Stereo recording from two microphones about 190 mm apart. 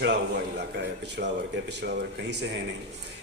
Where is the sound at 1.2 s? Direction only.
65° right (ahead or behind).